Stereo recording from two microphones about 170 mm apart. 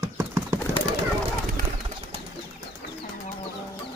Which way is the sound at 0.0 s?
15° right (ahead or behind).